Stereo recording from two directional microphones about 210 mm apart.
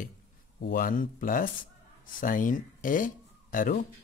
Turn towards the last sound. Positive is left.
turn(degrees=40)  # may be behind; listen again after turning